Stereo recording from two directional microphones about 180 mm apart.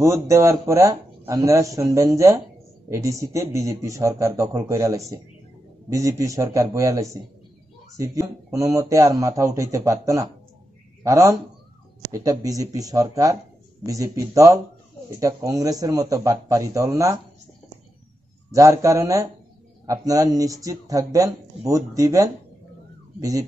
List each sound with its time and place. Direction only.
0.0 s speech: 15° right (ahead or behind)
18.5 s speech: 20° right (ahead or behind)